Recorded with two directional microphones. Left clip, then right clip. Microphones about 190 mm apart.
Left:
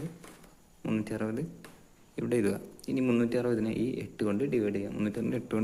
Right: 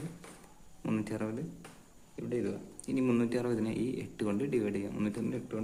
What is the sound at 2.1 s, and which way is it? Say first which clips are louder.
Speech: left 6 dB; 40° left (ahead or behind).